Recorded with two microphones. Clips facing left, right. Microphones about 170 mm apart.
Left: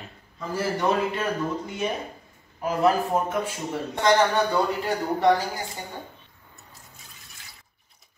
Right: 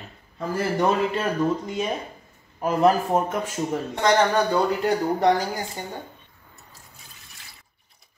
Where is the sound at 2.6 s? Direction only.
50° right (ahead or behind).